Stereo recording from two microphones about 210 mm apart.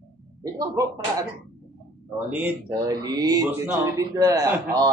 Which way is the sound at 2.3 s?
10° right (ahead or behind).